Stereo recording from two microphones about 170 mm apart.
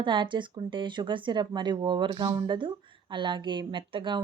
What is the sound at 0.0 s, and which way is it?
Speech, 30° right (ahead or behind).